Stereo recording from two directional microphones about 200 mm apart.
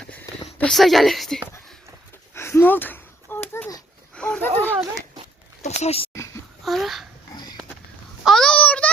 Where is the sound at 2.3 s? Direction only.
10° left (ahead or behind).